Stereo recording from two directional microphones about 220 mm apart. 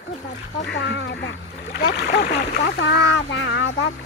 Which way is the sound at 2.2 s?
40° left (ahead or behind).